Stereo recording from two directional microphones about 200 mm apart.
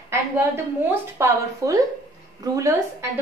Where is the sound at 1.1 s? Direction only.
15° right (ahead or behind).